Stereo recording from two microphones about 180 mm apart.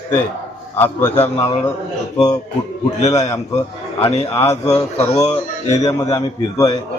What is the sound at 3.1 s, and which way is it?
A man's voice, 15° left (ahead or behind).